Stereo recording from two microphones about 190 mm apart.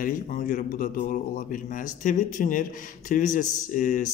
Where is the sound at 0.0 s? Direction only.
45° left (ahead or behind).